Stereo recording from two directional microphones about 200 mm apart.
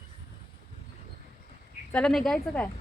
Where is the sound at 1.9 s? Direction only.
Centre (ahead or behind).